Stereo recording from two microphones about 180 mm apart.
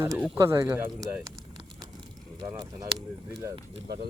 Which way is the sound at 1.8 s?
25° right (ahead or behind).